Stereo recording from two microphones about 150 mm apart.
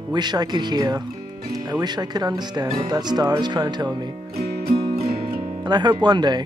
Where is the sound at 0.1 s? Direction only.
30° right (ahead or behind).